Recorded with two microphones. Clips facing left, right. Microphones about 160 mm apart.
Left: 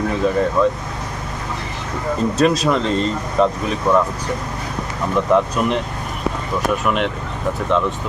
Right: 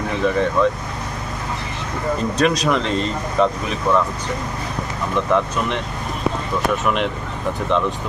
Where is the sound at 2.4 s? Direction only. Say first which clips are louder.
Left 2 dB; 5° left (ahead or behind).